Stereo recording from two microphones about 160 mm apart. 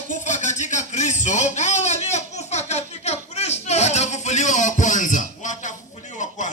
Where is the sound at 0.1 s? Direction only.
50° left (ahead or behind).